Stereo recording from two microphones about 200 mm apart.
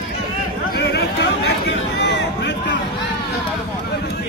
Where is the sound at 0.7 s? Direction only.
55° left (ahead or behind).